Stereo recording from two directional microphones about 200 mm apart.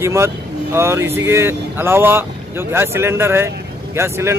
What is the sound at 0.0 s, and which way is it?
Speech, 15° right (ahead or behind).